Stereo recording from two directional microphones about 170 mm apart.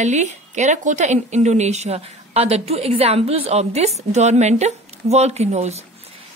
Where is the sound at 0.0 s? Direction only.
45° right (ahead or behind).